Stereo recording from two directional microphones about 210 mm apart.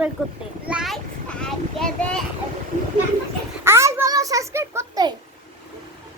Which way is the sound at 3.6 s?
15° right (ahead or behind).